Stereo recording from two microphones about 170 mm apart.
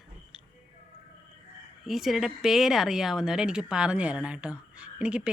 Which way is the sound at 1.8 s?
Centre (ahead or behind).